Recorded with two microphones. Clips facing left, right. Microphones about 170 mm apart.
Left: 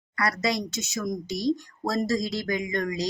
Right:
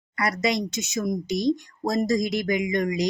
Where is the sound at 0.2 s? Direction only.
20° right (ahead or behind).